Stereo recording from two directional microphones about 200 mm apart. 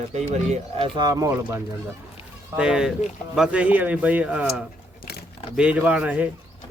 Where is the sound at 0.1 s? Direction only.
35° right (ahead or behind).